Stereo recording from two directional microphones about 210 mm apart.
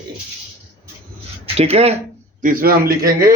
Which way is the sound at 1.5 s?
30° right (ahead or behind).